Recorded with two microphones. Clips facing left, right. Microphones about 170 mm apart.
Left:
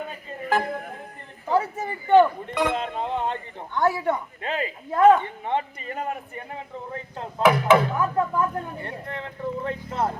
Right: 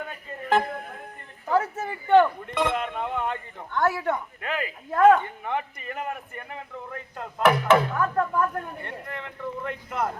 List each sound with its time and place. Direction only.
1.5 s a sound: 15° left (ahead or behind)
2.7 s speech: 30° left (ahead or behind)
3.8 s speech: 15° left (ahead or behind)
4.4 s speech: 25° left (ahead or behind)
4.9 s speech: 15° left (ahead or behind)
5.5 s speech: 25° left (ahead or behind)
7.4 s speech: 10° left (ahead or behind)
8.8 s speech: 30° left (ahead or behind)